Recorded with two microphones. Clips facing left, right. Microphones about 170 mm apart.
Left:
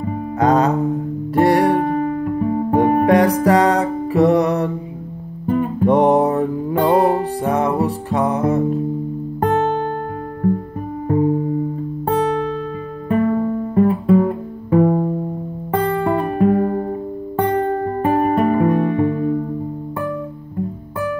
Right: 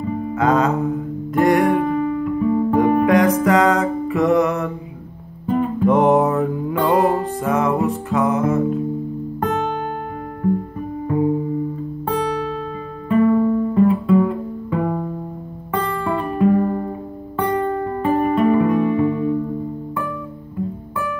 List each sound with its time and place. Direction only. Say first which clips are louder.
0.4 s music: left 2 dB; 35° left (ahead or behind)
9.4 s music: left 5 dB; 50° left (ahead or behind)
12.2 s music: left 4 dB; 50° left (ahead or behind); by 15.1 s 35° left (ahead or behind)
15.7 s music: left 4 dB; 50° left (ahead or behind)
18.0 s music: even; 55° left (ahead or behind)